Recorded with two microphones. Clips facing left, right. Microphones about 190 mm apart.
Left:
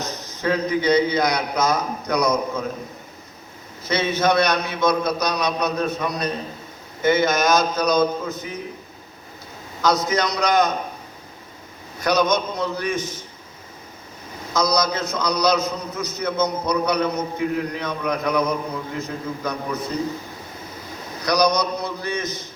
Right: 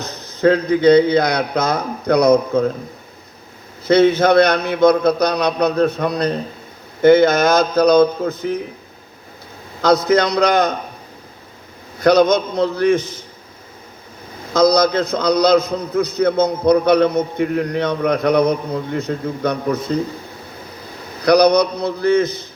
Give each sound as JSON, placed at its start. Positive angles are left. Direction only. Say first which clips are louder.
{"t": 0.3, "sound": "a man's voice", "louder": "right 8 dB", "side_deg": -60}
{"t": 3.8, "sound": "a man's voice", "louder": "right 8 dB", "side_deg": -60}
{"t": 9.8, "sound": "a man's voice", "louder": "right 6 dB", "side_deg": -60}
{"t": 11.9, "sound": "a man's voice", "louder": "right 7 dB", "side_deg": -60}
{"t": 14.5, "sound": "a man's voice", "louder": "right 8 dB", "side_deg": -60}
{"t": 21.2, "sound": "a man's voice", "louder": "right 8 dB", "side_deg": -60}